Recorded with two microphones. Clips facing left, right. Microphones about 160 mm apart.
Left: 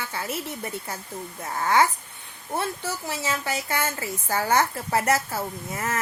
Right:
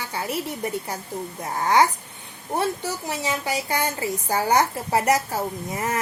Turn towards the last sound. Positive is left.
turn(degrees=-15)  # may be behind; listen again after turning